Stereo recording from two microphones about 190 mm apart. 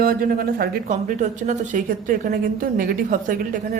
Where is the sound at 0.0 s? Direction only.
50° right (ahead or behind).